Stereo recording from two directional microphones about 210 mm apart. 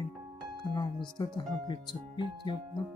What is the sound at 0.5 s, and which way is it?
Speech, 20° left (ahead or behind).